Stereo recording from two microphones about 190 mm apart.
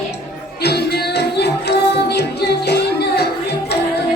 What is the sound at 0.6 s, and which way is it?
Music, 60° left (ahead or behind).